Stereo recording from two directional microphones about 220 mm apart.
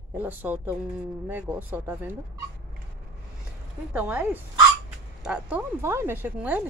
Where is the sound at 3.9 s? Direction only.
5° right (ahead or behind).